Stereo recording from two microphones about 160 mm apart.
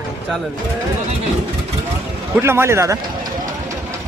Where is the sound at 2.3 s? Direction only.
15° right (ahead or behind).